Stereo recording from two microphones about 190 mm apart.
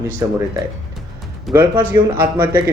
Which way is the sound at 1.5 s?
15° right (ahead or behind).